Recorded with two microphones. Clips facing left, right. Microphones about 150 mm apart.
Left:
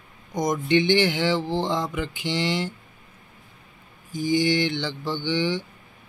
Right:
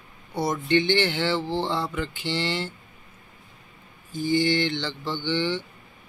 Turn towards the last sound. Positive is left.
turn(degrees=10)  # may be behind; listen again after turning